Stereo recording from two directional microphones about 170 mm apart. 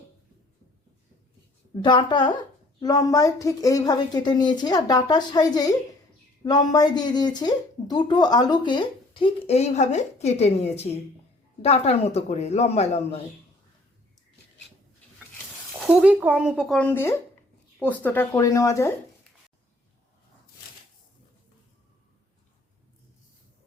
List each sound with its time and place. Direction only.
1.7 s a man's voice: 25° left (ahead or behind)
15.8 s speech: 5° right (ahead or behind)
16.7 s speech: 10° left (ahead or behind)